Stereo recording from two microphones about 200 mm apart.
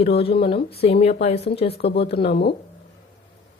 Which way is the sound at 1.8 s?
55° left (ahead or behind).